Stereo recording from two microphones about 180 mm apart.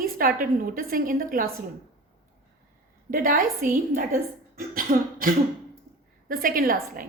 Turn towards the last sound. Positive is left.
turn(degrees=-55)  # may be behind; listen again after turning